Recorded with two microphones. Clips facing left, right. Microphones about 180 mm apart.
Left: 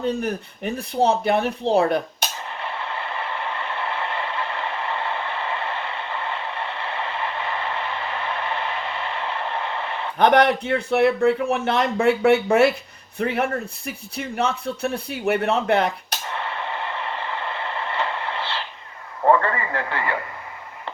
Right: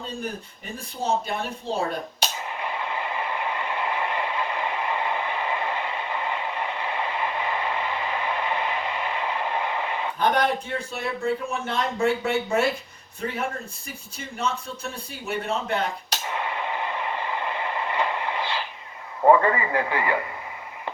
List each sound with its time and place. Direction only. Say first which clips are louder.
0.0 s a man's voice: left 8 dB; 65° left (ahead or behind)
2.6 s a sound: even; 15° right (ahead or behind)
10.2 s a man's voice: left 7 dB; 70° left (ahead or behind)
16.3 s radio: even; 10° right (ahead or behind)
19.2 s a man's voice: right 1 dB; 10° right (ahead or behind)